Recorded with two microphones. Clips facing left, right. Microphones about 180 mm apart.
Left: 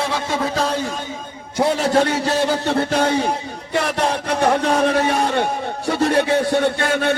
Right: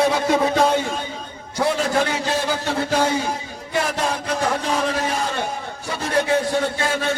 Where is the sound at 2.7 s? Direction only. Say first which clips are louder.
Left 2 dB; 60° left (ahead or behind).